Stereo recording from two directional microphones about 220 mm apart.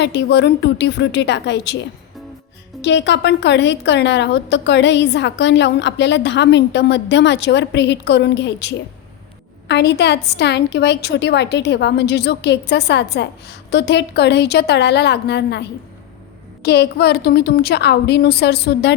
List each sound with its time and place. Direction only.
0.0 s a woman's voice: 50° left (ahead or behind)
2.8 s a woman's voice: 55° left (ahead or behind)
16.6 s a woman's voice: 50° left (ahead or behind)